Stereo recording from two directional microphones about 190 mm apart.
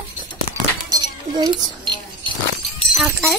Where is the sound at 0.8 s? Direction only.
20° right (ahead or behind).